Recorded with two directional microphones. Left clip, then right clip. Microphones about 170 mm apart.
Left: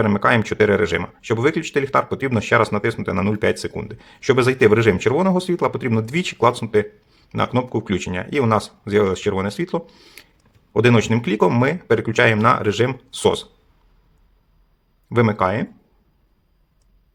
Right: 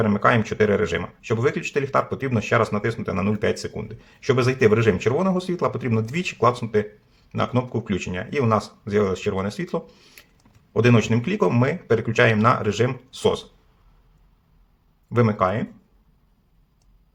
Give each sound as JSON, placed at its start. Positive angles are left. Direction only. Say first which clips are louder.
{"t": 0.0, "sound": "speech", "louder": "left 2 dB", "side_deg": 30}
{"t": 15.1, "sound": "speech", "louder": "left 3 dB", "side_deg": 25}